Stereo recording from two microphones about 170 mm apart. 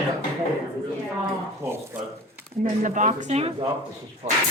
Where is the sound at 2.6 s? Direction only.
45° right (ahead or behind).